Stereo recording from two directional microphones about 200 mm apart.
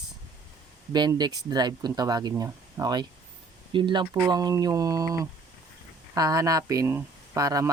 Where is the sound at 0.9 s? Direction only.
20° right (ahead or behind).